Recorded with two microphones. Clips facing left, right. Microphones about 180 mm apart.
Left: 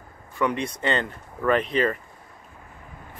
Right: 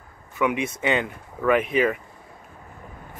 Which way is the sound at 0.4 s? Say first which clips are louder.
Right 1 dB; 5° right (ahead or behind).